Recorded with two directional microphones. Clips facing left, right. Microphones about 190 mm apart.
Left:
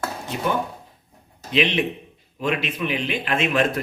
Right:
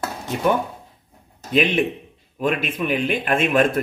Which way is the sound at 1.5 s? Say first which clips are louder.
Right 3 dB; 50° right (ahead or behind).